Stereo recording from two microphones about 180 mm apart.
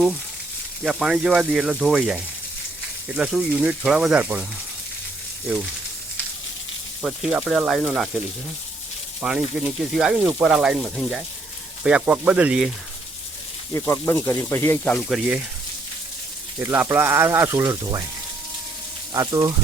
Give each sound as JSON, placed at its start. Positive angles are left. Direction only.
{"t": 0.9, "sound": "speech", "side_deg": -5}
{"t": 7.0, "sound": "speech", "side_deg": -5}
{"t": 9.2, "sound": "speech", "side_deg": -5}
{"t": 13.7, "sound": "speech", "side_deg": 15}
{"t": 16.6, "sound": "speech", "side_deg": -15}
{"t": 19.1, "sound": "speech", "side_deg": -20}